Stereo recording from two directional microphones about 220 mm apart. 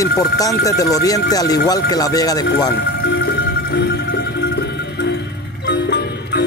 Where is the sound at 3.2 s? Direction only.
50° left (ahead or behind).